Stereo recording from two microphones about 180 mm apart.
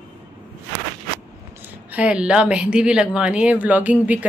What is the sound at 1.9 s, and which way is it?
Speech, 5° right (ahead or behind).